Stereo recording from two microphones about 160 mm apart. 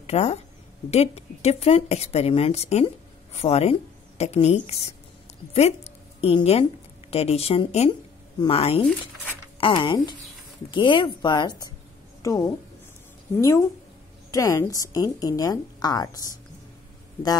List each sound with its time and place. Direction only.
0.0 s a woman's voice: 40° left (ahead or behind); by 12.5 s 20° left (ahead or behind)
14.3 s a woman's voice: 20° left (ahead or behind)